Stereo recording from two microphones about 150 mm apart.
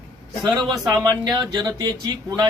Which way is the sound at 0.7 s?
25° right (ahead or behind).